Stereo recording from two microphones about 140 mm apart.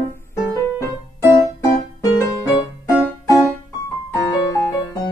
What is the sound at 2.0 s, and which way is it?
Music, 25° left (ahead or behind).